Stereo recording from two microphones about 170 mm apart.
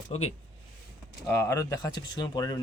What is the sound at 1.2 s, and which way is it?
Speech, 15° left (ahead or behind).